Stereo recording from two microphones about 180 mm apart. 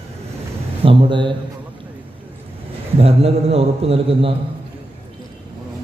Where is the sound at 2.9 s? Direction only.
35° right (ahead or behind).